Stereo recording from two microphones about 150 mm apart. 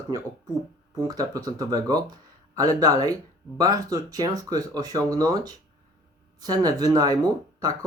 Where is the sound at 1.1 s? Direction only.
25° right (ahead or behind).